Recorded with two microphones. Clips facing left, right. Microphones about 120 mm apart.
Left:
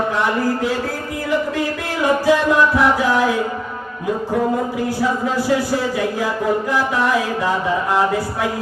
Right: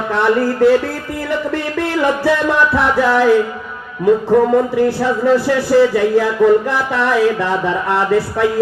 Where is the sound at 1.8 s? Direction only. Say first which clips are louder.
Right 5 dB; 55° right (ahead or behind).